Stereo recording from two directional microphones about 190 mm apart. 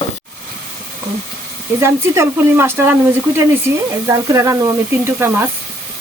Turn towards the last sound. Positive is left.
turn(degrees=-10)  # may be behind; listen again after turning